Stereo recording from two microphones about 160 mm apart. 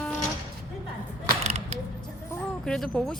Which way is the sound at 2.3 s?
5° left (ahead or behind).